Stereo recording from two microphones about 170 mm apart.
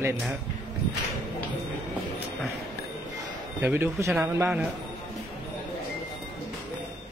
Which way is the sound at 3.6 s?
15° right (ahead or behind).